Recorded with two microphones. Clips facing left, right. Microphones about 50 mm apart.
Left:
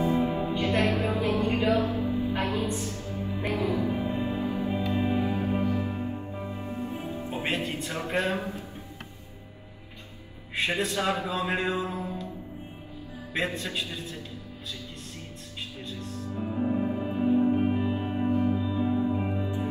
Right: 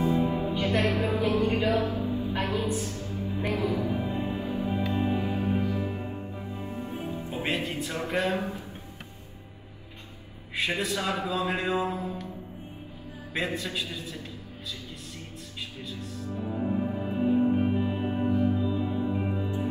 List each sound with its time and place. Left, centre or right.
0.0 s music: left
4.9 s music: left
5.2 s music: left
8.1 s a sound: left
10.6 s a man's voice: left
11.7 s mantra: right
13.4 s a man's voice: left
15.9 s music: left
16.4 s music: centre
17.1 s music: centre
17.6 s music: left
17.9 s music: centre
18.3 s music: left
18.6 s music: centre